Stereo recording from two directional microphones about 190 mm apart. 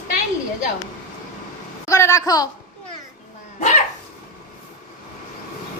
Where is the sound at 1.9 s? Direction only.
15° left (ahead or behind).